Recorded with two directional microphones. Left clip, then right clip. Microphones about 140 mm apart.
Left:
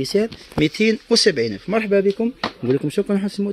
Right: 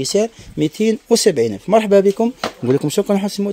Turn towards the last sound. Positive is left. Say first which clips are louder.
# right 4 dB
turn(degrees=-25)  # may be behind; listen again after turning